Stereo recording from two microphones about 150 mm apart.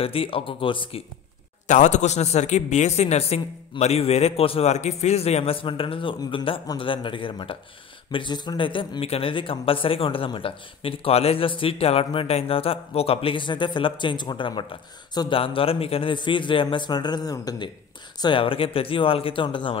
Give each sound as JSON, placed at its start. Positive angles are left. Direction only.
{"t": 0.0, "sound": "a man's voice", "side_deg": 40}
{"t": 1.7, "sound": "a man's voice", "side_deg": 55}
{"t": 18.2, "sound": "a man's voice", "side_deg": 35}